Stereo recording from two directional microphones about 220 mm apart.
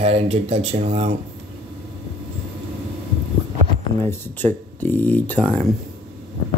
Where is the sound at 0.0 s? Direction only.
30° right (ahead or behind).